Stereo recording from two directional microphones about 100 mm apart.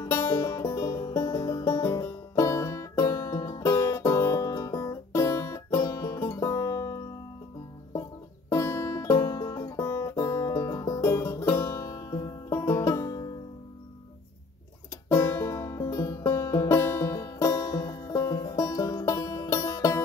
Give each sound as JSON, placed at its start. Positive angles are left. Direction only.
{"t": 0.0, "sound": "music", "side_deg": 25}
{"t": 8.5, "sound": "music", "side_deg": 30}
{"t": 15.0, "sound": "music", "side_deg": 25}